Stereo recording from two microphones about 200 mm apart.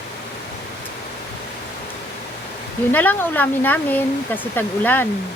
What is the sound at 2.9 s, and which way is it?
Speech, 10° left (ahead or behind).